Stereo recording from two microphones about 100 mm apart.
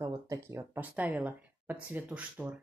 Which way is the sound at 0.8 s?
15° right (ahead or behind).